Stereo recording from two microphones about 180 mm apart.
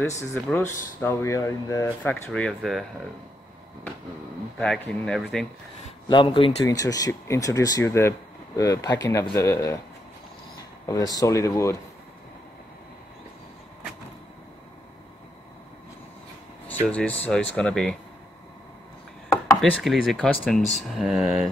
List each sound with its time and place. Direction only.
0.0 s speech: 15° left (ahead or behind)
4.6 s speech: 5° left (ahead or behind)
6.0 s speech: 25° left (ahead or behind)
10.9 s speech: 20° left (ahead or behind)
16.9 s speech: 10° left (ahead or behind)
19.6 s speech: centre (ahead or behind)